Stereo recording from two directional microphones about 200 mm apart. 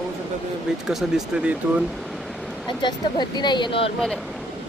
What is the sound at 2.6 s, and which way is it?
Speech, 20° left (ahead or behind).